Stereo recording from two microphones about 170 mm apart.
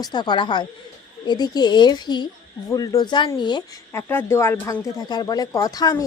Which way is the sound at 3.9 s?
15° left (ahead or behind).